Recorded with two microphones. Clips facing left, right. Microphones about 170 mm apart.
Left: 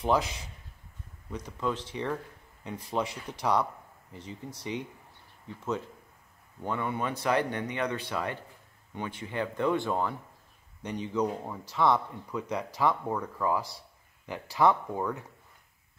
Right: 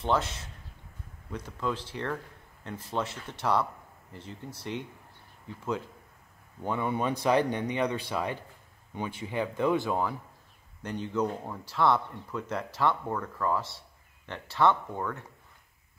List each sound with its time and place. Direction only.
0.0 s speech: centre (ahead or behind)
6.6 s speech: 15° right (ahead or behind); by 15.2 s 5° left (ahead or behind)